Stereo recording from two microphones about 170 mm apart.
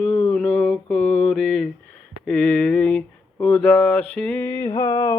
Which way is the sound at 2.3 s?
5° left (ahead or behind).